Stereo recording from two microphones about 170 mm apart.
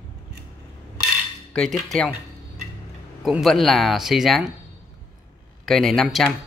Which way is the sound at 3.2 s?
Centre (ahead or behind).